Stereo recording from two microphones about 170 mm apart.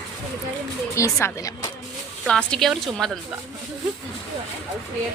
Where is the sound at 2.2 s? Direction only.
5° left (ahead or behind).